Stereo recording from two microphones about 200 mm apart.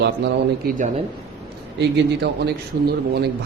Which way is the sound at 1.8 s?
55° right (ahead or behind).